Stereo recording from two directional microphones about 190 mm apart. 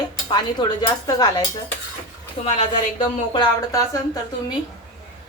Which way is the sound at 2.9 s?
25° left (ahead or behind).